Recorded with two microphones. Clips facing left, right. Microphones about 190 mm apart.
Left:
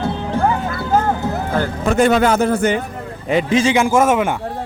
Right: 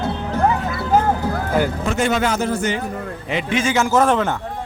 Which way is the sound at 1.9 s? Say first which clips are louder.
Left 10 dB; 55° left (ahead or behind).